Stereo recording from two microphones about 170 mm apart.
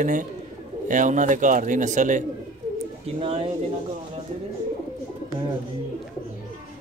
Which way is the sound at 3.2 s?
35° right (ahead or behind).